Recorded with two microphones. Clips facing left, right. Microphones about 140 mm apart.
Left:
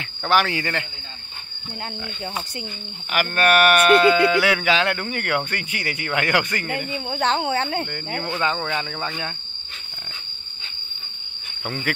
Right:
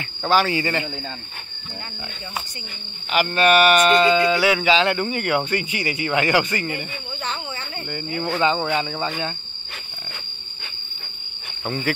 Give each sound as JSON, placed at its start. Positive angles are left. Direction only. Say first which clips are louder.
{"t": 0.2, "sound": "speech", "louder": "right 2 dB", "side_deg": -5}
{"t": 3.3, "sound": "speech", "louder": "right 2 dB", "side_deg": -10}
{"t": 3.7, "sound": "speech", "louder": "left 1 dB", "side_deg": 5}
{"t": 7.1, "sound": "speech", "louder": "left 11 dB", "side_deg": 85}
{"t": 8.4, "sound": "speech", "louder": "right 5 dB", "side_deg": -10}
{"t": 11.6, "sound": "cricket", "louder": "right 3 dB", "side_deg": 0}